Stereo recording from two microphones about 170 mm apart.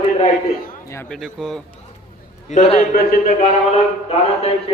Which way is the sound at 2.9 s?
55° left (ahead or behind).